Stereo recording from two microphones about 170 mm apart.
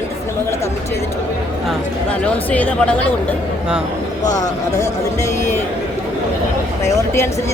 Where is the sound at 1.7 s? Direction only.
10° left (ahead or behind).